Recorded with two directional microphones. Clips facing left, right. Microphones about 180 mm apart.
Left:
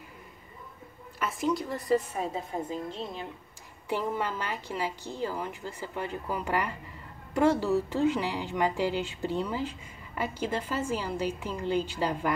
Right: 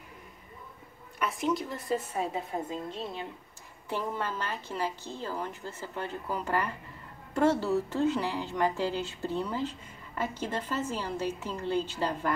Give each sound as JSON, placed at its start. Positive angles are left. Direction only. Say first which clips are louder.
{"t": 1.2, "sound": "a woman's voice", "louder": "left 1 dB", "side_deg": 0}
{"t": 2.1, "sound": "a woman's voice", "louder": "even", "side_deg": -25}
{"t": 3.9, "sound": "a woman's voice", "louder": "left 3 dB", "side_deg": 15}